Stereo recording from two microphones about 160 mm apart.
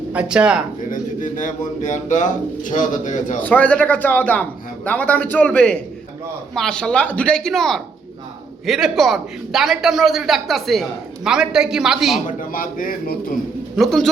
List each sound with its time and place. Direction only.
0.1 s speech: 10° right (ahead or behind)
0.9 s speech: 55° left (ahead or behind)
3.4 s a man's voice: 10° left (ahead or behind)
12.4 s a man's voice: 60° left (ahead or behind)
13.7 s a man's voice: centre (ahead or behind)